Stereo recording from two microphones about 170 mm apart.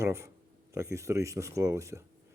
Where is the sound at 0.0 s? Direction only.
15° right (ahead or behind).